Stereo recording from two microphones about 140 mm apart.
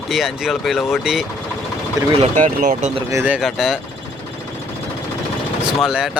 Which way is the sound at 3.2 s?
5° right (ahead or behind).